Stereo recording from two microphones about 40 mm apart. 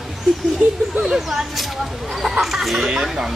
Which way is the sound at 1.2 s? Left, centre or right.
Centre.